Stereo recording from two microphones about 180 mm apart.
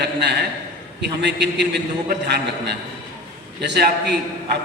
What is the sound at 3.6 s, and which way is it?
Speech, 70° right (ahead or behind).